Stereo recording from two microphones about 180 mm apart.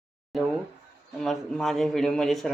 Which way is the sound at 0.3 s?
Centre (ahead or behind).